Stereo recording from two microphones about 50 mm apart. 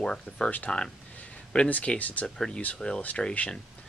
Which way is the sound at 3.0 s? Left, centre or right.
Left.